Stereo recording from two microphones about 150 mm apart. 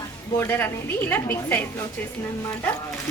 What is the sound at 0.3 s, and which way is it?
Speech, 15° left (ahead or behind).